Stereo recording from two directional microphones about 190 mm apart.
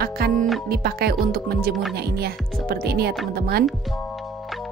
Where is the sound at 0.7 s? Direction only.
55° right (ahead or behind).